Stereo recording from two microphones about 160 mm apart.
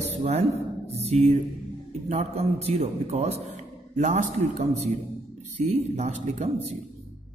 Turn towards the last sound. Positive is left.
turn(degrees=-45)  # may be behind; listen again after turning